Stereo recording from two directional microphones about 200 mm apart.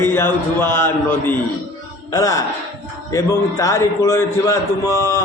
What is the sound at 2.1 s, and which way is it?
A man's voice, 15° left (ahead or behind).